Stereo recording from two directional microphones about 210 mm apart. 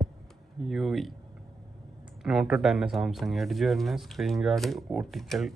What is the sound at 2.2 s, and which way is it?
Speech, centre (ahead or behind).